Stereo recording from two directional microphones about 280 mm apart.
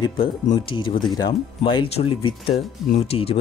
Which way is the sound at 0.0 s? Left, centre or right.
Centre.